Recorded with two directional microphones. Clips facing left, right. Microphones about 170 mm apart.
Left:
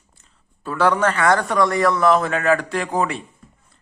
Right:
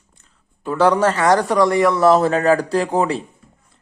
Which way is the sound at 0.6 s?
20° right (ahead or behind).